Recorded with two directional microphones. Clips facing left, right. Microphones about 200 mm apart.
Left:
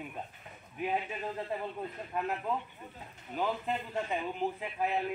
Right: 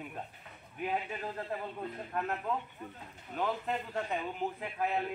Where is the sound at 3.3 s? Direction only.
5° left (ahead or behind).